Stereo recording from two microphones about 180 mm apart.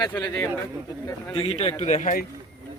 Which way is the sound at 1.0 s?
25° left (ahead or behind).